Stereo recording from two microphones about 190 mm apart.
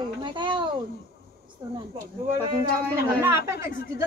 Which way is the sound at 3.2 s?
15° right (ahead or behind).